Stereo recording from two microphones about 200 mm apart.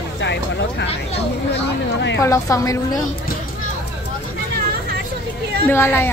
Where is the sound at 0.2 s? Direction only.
60° left (ahead or behind).